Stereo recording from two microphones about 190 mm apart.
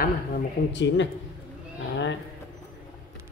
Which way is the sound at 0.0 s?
60° left (ahead or behind).